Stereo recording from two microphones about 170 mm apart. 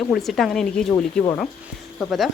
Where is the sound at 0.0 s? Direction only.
Centre (ahead or behind).